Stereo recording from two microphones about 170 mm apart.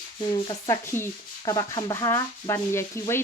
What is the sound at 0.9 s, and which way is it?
Sanding, 15° left (ahead or behind).